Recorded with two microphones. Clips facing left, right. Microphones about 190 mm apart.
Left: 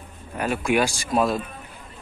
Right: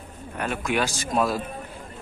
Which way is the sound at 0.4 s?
10° left (ahead or behind).